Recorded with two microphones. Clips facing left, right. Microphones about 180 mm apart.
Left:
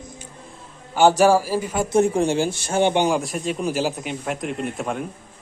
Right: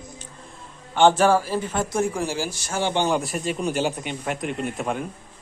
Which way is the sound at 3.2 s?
Centre (ahead or behind).